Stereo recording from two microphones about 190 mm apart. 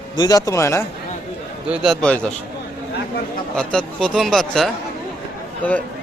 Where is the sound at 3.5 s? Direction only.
5° left (ahead or behind).